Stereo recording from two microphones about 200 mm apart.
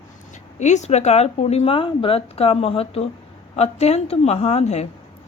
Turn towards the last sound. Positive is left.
turn(degrees=35)  # may be behind; listen again after turning